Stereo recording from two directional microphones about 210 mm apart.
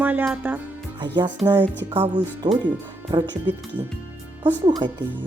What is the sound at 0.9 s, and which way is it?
Speech, 25° right (ahead or behind).